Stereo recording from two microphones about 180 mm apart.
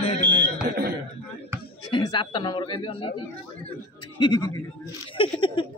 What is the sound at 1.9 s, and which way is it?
A man's voice, 25° left (ahead or behind).